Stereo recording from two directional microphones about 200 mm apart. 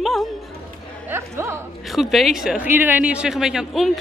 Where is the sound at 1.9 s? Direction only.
Centre (ahead or behind).